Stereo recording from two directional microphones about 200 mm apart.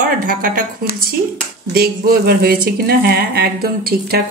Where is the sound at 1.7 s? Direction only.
50° right (ahead or behind).